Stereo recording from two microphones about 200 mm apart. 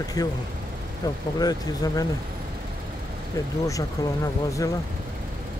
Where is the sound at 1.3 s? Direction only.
20° left (ahead or behind).